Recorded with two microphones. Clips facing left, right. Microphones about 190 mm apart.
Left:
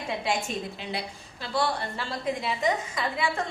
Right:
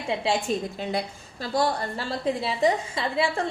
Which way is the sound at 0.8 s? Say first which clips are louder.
Right 6 dB; 45° right (ahead or behind).